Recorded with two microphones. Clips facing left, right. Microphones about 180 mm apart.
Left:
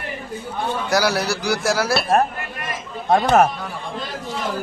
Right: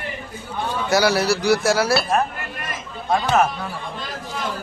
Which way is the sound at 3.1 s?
45° left (ahead or behind).